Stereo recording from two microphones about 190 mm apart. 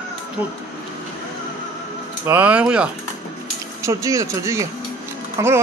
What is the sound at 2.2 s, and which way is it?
Speech, 10° right (ahead or behind).